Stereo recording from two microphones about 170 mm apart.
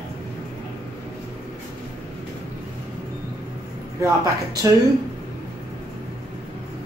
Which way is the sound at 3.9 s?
20° right (ahead or behind).